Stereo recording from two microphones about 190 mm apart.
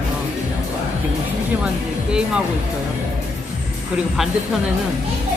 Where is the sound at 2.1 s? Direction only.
5° right (ahead or behind).